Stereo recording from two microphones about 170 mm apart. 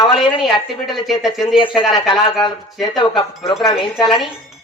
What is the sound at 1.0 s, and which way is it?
Speech, centre (ahead or behind).